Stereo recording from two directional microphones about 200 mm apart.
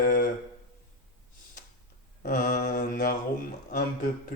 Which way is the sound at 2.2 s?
40° left (ahead or behind).